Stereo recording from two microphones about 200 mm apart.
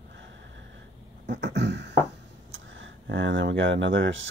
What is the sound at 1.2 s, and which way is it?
Beatboxing, 60° right (ahead or behind).